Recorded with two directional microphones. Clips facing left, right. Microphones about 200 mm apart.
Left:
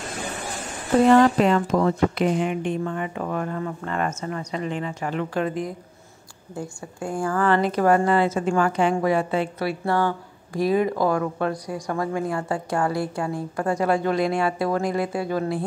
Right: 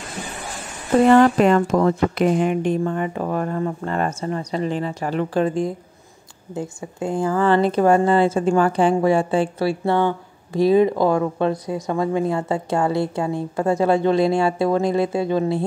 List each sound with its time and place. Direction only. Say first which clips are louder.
1.1 s a woman's voice: right 3 dB; 50° right (ahead or behind); by 15.6 s 25° right (ahead or behind)